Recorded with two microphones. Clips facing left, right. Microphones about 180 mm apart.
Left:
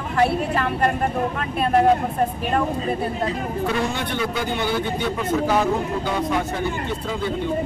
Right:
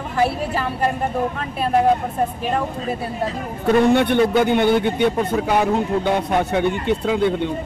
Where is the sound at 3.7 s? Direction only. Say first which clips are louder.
Right 14 dB; 60° right (ahead or behind).